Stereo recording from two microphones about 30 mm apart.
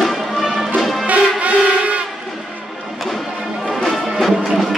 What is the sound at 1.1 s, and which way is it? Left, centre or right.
Music, right.